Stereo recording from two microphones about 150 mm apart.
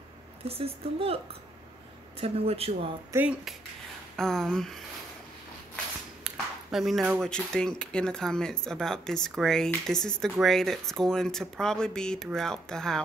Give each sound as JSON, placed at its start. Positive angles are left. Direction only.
{"t": 0.5, "sound": "a woman's voice", "side_deg": -40}
{"t": 3.1, "sound": "speech", "side_deg": -15}
{"t": 4.2, "sound": "speech", "side_deg": 5}
{"t": 6.2, "sound": "ping", "side_deg": 0}
{"t": 7.2, "sound": "speech", "side_deg": 5}